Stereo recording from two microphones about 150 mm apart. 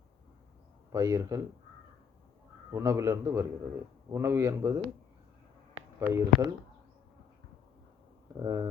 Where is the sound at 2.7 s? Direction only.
20° right (ahead or behind).